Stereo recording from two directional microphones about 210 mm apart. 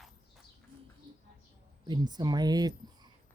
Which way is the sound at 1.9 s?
20° right (ahead or behind).